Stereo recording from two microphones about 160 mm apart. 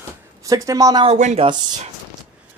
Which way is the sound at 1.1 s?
45° right (ahead or behind).